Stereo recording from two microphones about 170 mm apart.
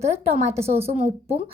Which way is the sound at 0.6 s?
35° right (ahead or behind).